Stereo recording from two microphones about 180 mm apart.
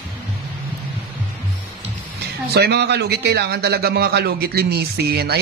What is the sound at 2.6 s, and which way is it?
A man's voice, 65° right (ahead or behind).